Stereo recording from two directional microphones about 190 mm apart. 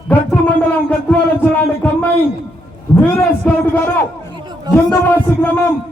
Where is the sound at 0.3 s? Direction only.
5° left (ahead or behind).